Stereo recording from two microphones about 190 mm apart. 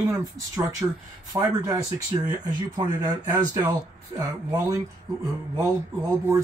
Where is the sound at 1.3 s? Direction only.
15° right (ahead or behind).